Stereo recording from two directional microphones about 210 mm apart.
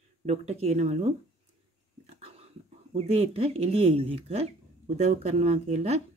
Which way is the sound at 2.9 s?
30° right (ahead or behind).